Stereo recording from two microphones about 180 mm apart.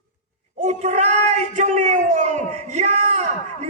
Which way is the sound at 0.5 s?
40° right (ahead or behind).